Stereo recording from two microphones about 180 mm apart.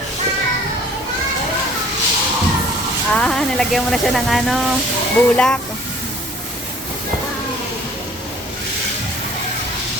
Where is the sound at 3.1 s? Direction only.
5° left (ahead or behind).